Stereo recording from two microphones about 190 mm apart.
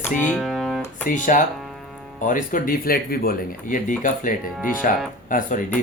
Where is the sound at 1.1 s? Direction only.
40° left (ahead or behind).